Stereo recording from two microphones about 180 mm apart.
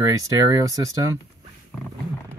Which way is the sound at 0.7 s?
20° right (ahead or behind).